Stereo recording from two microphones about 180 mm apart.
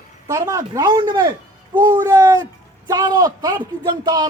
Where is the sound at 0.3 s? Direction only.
15° right (ahead or behind).